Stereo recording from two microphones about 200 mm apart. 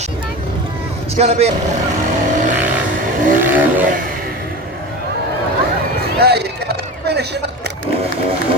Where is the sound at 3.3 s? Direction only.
10° right (ahead or behind).